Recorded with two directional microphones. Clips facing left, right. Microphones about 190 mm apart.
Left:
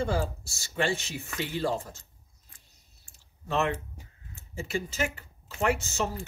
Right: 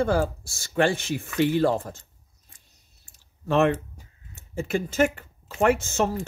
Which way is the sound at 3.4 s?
55° right (ahead or behind).